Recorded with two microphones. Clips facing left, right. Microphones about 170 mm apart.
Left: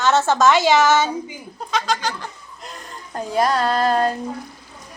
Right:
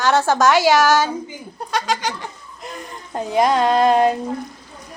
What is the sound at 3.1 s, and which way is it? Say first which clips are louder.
A woman's voice: right 3 dB; 20° right (ahead or behind).